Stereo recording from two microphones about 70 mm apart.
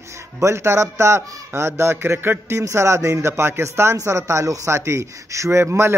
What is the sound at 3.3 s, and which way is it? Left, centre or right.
A man's voice, right.